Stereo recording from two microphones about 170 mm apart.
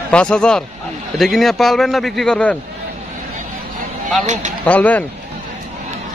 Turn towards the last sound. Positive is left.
turn(degrees=10)  # may be behind; listen again after turning